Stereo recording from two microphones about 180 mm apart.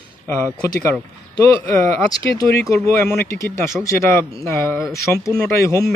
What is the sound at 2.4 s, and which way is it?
A man's voice, 15° left (ahead or behind).